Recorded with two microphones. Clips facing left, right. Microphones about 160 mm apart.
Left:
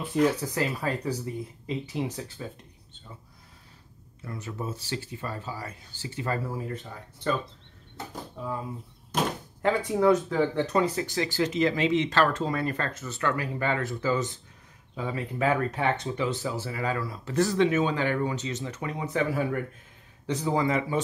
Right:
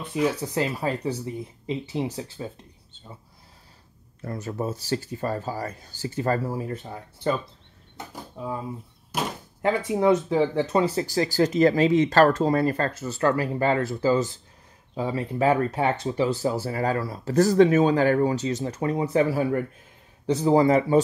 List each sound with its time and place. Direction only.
0.0 s speech: 5° right (ahead or behind)
0.4 s speech: 25° right (ahead or behind)
4.2 s speech: 40° right (ahead or behind)
8.1 s speech: 15° right (ahead or behind)
9.9 s speech: 25° right (ahead or behind)